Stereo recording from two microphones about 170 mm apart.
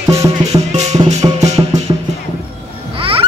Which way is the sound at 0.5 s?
40° right (ahead or behind).